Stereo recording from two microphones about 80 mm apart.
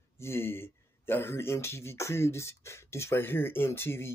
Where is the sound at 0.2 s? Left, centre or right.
Left.